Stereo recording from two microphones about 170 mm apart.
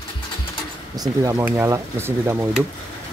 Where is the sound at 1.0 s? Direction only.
20° right (ahead or behind).